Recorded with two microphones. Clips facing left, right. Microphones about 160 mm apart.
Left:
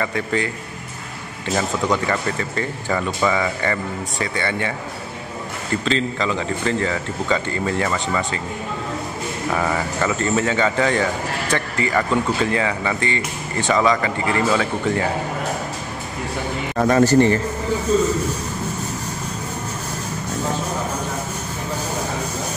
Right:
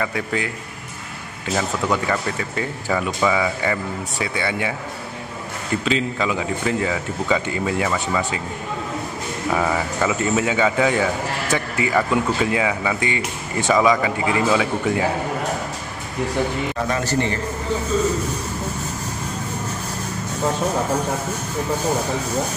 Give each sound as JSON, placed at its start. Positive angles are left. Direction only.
{"t": 0.0, "sound": "speech", "side_deg": -5}
{"t": 1.5, "sound": "speech", "side_deg": 0}
{"t": 5.9, "sound": "speech", "side_deg": -10}
{"t": 9.5, "sound": "speech", "side_deg": -5}
{"t": 16.7, "sound": "a man's voice", "side_deg": 45}